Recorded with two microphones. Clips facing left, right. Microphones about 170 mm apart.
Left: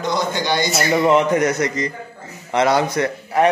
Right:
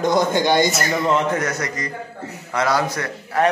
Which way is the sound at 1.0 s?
15° left (ahead or behind).